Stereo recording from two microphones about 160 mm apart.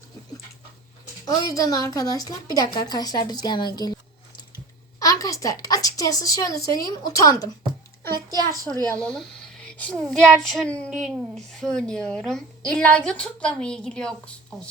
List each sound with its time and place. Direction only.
1.3 s a woman's voice: 20° left (ahead or behind)
4.9 s a woman's voice: 20° left (ahead or behind)
8.6 s a woman's voice: 20° right (ahead or behind)
9.0 s a woman's voice: 5° left (ahead or behind)